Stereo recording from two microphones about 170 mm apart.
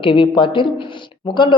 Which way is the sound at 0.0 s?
30° left (ahead or behind).